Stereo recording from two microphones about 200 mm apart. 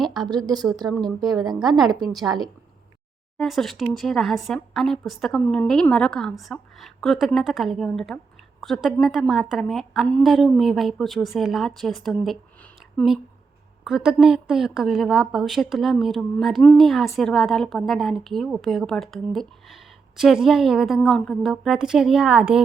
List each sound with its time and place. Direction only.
0.0 s speech: centre (ahead or behind)
0.3 s speech: 20° right (ahead or behind)
3.3 s a woman's voice: centre (ahead or behind)
13.8 s a woman's voice: 5° right (ahead or behind)